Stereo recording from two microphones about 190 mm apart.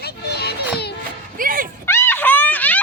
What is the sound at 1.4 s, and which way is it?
Music, 45° right (ahead or behind).